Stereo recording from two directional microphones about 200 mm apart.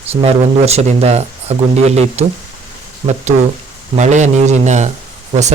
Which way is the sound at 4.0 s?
35° right (ahead or behind).